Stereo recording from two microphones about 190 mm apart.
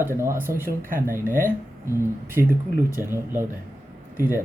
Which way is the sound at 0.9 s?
45° right (ahead or behind).